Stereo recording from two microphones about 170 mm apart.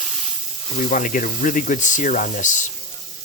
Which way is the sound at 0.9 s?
50° left (ahead or behind).